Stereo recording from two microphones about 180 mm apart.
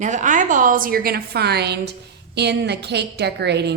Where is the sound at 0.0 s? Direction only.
45° right (ahead or behind).